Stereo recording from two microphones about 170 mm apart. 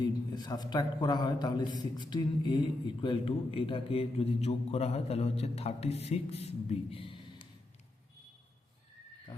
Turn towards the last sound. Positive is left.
turn(degrees=30)  # may be behind; listen again after turning